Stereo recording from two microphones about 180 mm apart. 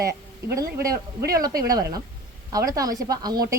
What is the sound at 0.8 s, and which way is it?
A woman's voice, 15° right (ahead or behind).